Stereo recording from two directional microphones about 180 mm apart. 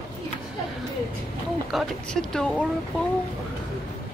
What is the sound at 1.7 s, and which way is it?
Speech, 5° left (ahead or behind).